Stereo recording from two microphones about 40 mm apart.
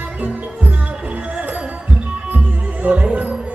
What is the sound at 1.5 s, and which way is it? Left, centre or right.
Music, right.